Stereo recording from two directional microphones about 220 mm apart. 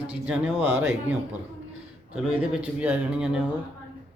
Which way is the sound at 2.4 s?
5° right (ahead or behind).